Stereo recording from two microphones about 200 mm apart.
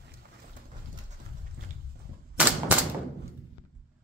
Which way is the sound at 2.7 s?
10° right (ahead or behind).